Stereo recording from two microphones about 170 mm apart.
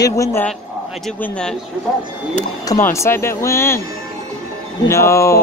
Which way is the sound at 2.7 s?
15° left (ahead or behind).